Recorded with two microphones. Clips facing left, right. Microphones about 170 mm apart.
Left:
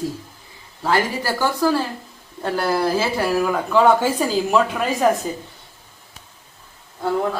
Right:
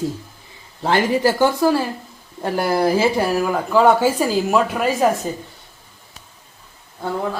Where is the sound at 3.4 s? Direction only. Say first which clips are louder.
Right 1 dB; 5° right (ahead or behind).